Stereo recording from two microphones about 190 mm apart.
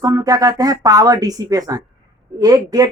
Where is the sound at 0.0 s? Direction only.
20° right (ahead or behind).